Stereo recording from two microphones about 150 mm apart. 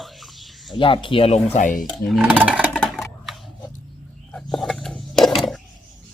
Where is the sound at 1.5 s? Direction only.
65° left (ahead or behind).